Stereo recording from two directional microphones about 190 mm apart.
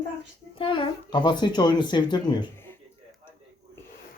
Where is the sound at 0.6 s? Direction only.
25° left (ahead or behind).